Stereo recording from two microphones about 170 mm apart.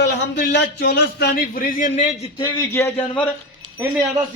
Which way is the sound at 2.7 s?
15° left (ahead or behind).